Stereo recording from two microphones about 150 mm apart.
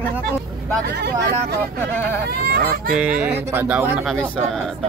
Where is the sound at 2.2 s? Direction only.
90° right.